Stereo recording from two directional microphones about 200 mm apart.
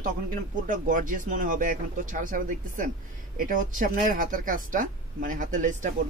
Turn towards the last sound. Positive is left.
turn(degrees=-40)  # may be behind; listen again after turning